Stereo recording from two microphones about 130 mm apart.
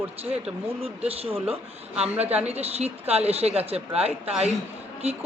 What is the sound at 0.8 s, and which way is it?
A woman's voice, 50° right (ahead or behind).